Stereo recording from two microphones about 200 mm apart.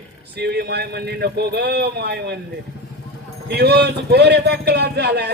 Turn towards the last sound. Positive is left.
turn(degrees=-55)  # may be behind; listen again after turning